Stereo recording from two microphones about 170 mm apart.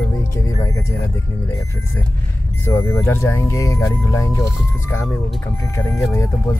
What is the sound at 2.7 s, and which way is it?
Speech, 15° left (ahead or behind).